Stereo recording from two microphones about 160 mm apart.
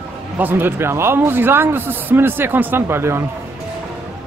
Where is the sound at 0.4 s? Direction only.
10° right (ahead or behind).